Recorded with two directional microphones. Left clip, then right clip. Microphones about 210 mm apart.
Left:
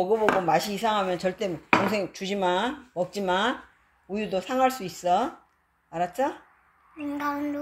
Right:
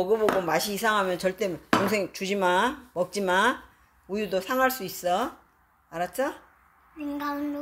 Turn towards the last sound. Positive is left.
turn(degrees=15)  # may be behind; listen again after turning